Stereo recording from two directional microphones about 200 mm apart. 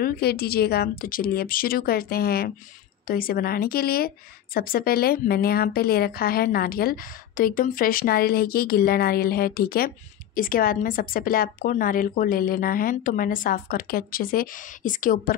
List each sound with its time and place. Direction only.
0.0 s a woman's voice: 50° left (ahead or behind)